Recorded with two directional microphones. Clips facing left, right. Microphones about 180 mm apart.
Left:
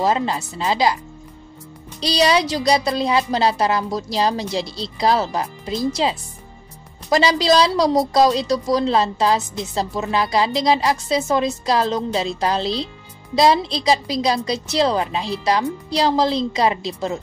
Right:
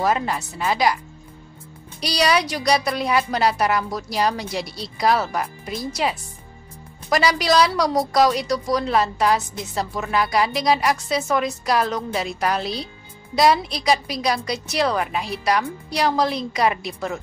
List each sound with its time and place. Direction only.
0.0 s a woman's voice: 25° left (ahead or behind)
2.0 s a woman's voice: 25° left (ahead or behind)